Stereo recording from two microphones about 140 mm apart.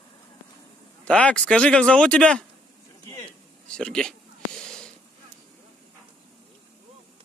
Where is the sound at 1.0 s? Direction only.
10° left (ahead or behind).